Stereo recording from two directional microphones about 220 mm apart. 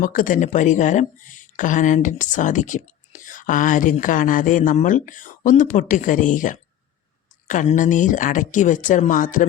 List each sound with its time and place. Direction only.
0.0 s speech: 40° left (ahead or behind)